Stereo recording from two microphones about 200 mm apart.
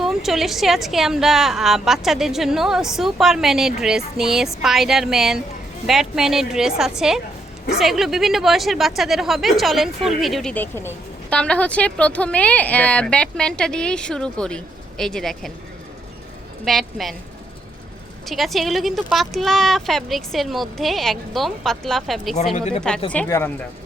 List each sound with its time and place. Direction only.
0.0 s speech: centre (ahead or behind)
16.6 s speech: centre (ahead or behind)
18.3 s speech: centre (ahead or behind)
22.5 s speech: 35° left (ahead or behind)
23.1 s speech: 10° left (ahead or behind)